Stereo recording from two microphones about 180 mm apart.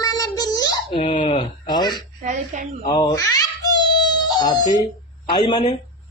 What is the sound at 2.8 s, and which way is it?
Babbling, 20° left (ahead or behind).